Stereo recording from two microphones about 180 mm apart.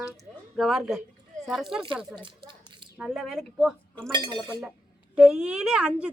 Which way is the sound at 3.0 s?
Centre (ahead or behind).